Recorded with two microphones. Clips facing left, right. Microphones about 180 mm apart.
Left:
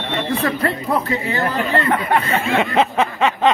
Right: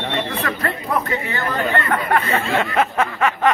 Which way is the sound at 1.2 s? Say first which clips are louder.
Left 2 dB; 35° left (ahead or behind).